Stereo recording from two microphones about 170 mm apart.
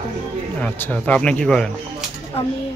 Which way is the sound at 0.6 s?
10° left (ahead or behind).